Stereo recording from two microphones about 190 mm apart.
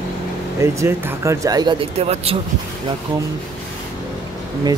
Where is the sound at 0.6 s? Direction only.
15° right (ahead or behind); by 2.4 s 35° right (ahead or behind).